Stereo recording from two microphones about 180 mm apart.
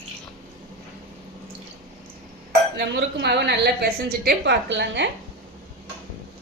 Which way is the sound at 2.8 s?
70° right (ahead or behind).